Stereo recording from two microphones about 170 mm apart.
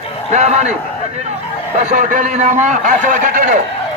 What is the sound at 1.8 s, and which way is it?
A man's voice, 50° right (ahead or behind).